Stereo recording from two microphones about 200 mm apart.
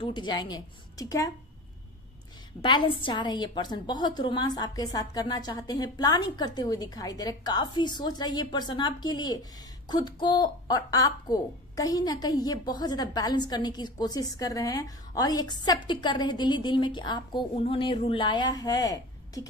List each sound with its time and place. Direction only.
0.0 s a woman's voice: 20° left (ahead or behind)
2.6 s a woman's voice: 25° left (ahead or behind)